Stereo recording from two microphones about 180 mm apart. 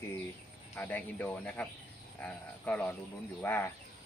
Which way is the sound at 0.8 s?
10° left (ahead or behind).